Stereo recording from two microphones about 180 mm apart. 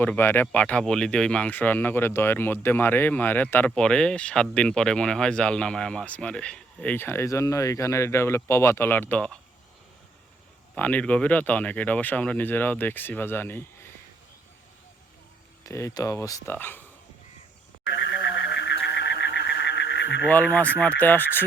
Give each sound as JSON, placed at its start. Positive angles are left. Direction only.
{"t": 0.0, "sound": "speech", "side_deg": 10}
{"t": 10.8, "sound": "speech", "side_deg": 10}
{"t": 15.6, "sound": "speech", "side_deg": 15}
{"t": 18.5, "sound": "a sound", "side_deg": 75}
{"t": 20.2, "sound": "speech", "side_deg": 10}